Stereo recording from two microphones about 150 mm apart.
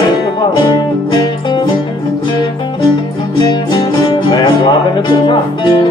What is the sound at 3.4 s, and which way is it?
Music, 30° left (ahead or behind).